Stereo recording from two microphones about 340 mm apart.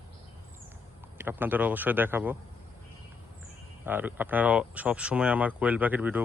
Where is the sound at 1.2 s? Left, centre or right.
Centre.